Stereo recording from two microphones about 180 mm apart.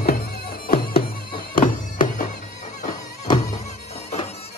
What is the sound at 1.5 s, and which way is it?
Music, 50° left (ahead or behind).